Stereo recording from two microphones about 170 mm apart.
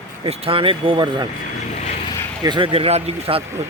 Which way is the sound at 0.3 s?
35° right (ahead or behind).